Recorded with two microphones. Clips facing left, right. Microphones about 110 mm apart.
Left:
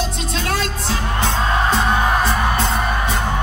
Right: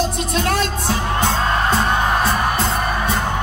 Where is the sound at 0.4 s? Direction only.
50° right (ahead or behind).